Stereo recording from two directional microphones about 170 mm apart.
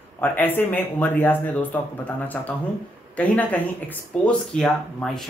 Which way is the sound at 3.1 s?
10° left (ahead or behind).